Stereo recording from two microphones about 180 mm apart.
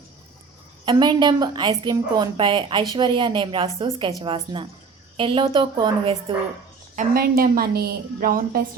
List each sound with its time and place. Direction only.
0.9 s a woman's voice: 25° right (ahead or behind)
6.9 s a woman's voice: 50° right (ahead or behind)